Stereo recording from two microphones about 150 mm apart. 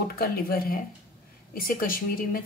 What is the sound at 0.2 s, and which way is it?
A woman's voice, 85° left.